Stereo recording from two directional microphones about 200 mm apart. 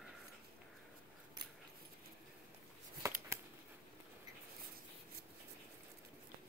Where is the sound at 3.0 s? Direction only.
15° right (ahead or behind).